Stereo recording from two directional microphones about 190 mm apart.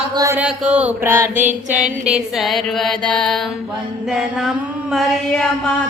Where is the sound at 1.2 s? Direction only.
40° right (ahead or behind).